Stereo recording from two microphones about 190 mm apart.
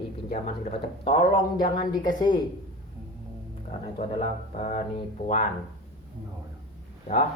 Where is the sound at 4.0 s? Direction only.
30° left (ahead or behind).